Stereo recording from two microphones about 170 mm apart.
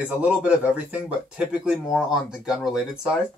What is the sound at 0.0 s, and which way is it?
Speech, 10° right (ahead or behind).